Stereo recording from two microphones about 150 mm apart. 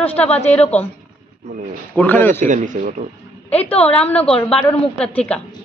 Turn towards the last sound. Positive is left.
turn(degrees=5)  # may be behind; listen again after turning